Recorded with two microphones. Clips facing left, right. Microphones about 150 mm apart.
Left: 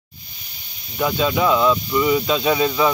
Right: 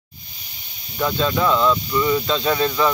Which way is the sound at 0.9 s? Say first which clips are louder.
Left 1 dB; 10° left (ahead or behind).